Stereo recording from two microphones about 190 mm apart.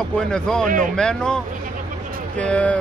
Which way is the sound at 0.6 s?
45° right (ahead or behind).